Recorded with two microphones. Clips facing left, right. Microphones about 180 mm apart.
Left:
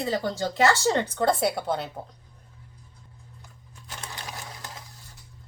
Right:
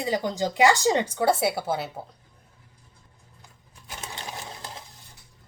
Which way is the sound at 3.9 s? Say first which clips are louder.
Right 2 dB; 25° right (ahead or behind).